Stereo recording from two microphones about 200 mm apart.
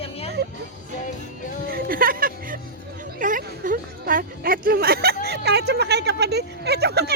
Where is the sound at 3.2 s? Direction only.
40° right (ahead or behind).